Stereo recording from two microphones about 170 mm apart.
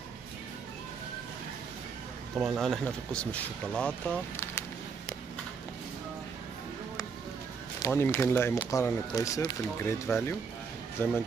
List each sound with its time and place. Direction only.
2.3 s speech: centre (ahead or behind)
7.8 s speech: 15° left (ahead or behind)